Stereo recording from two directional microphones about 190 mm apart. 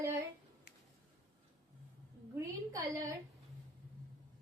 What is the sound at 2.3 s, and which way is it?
Speech, 15° right (ahead or behind).